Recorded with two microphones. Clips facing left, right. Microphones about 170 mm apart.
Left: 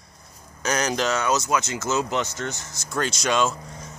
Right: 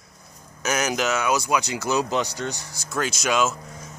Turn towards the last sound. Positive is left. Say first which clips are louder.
# even
turn(degrees=-5)  # may be behind; listen again after turning